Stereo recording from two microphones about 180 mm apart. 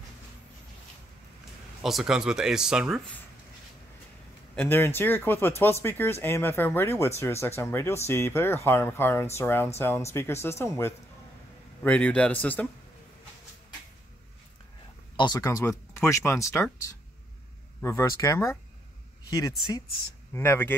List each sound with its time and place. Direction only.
1.8 s speech: centre (ahead or behind)
4.6 s speech: 10° left (ahead or behind)
15.1 s speech: 20° left (ahead or behind)
17.8 s speech: 15° left (ahead or behind)